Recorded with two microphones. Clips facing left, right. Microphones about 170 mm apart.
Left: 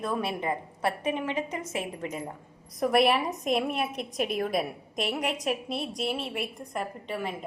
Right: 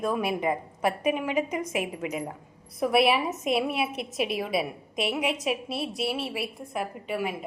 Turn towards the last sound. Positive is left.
turn(degrees=-5)  # may be behind; listen again after turning